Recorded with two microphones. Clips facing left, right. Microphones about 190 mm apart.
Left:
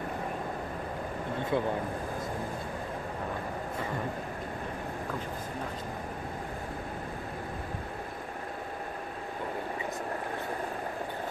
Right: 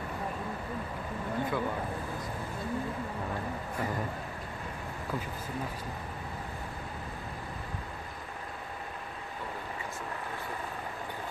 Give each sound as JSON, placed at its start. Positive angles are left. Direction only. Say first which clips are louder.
{"t": 1.5, "sound": "speech", "louder": "left 5 dB", "side_deg": 25}